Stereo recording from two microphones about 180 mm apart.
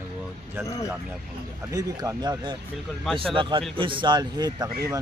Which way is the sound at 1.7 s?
20° right (ahead or behind).